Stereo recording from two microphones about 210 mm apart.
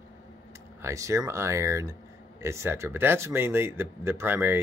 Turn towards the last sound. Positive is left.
turn(degrees=-10)  # may be behind; listen again after turning